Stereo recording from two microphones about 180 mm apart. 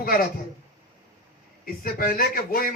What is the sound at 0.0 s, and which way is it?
Speech, 55° left (ahead or behind).